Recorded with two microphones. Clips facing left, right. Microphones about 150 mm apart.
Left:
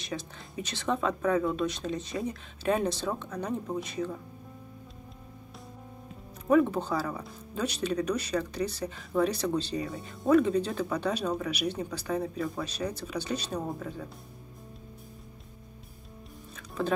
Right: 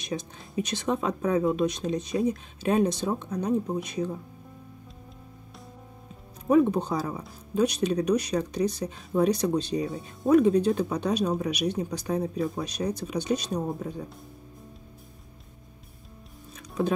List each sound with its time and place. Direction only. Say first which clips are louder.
0.0 s speech: right 4 dB; 15° right (ahead or behind)
6.5 s speech: right 2 dB; 15° right (ahead or behind)
16.5 s music: right 4 dB; 15° right (ahead or behind)